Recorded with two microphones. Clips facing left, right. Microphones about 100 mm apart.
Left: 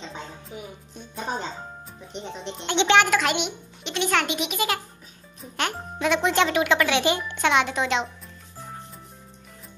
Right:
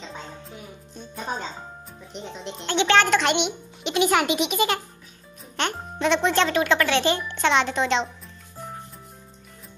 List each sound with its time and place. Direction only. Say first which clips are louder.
2.1 s a child's voice: left 1 dB; centre (ahead or behind)
2.6 s speech: even; 20° left (ahead or behind)
3.1 s a child's voice: right 2 dB; 5° left (ahead or behind)